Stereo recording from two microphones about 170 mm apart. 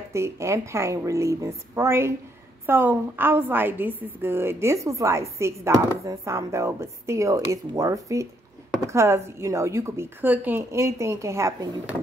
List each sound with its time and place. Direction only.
0.1 s a woman's voice: 15° right (ahead or behind)